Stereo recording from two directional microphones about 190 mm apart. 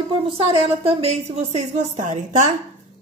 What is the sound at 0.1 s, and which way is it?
Speech, 30° right (ahead or behind).